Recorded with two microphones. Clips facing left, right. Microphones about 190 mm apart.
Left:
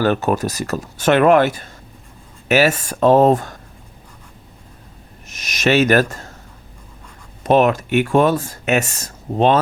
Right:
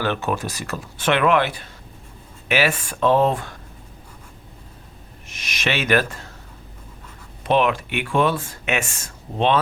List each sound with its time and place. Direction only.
0.0 s speech: 40° left (ahead or behind)
5.3 s speech: 40° left (ahead or behind)
7.4 s speech: 45° left (ahead or behind)